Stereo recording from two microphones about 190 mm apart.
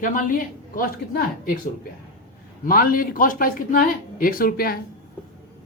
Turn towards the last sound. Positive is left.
turn(degrees=50)  # may be behind; listen again after turning